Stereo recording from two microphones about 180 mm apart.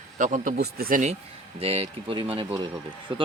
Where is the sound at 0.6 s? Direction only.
55° right (ahead or behind).